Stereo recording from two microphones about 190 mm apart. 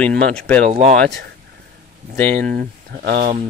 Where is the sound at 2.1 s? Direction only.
10° left (ahead or behind).